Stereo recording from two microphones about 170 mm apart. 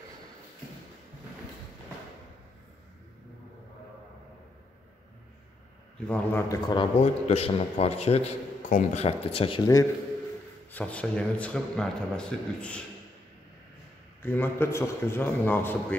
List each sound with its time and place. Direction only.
6.0 s speech: 10° left (ahead or behind)
6.5 s a man's voice: 30° left (ahead or behind)
10.7 s speech: 10° left (ahead or behind)
14.2 s speech: 10° left (ahead or behind)